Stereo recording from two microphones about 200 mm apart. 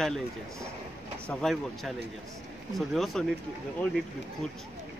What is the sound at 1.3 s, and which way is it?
Speech, centre (ahead or behind).